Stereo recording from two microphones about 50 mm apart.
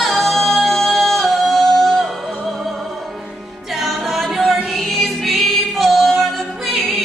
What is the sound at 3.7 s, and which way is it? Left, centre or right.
Choir, centre.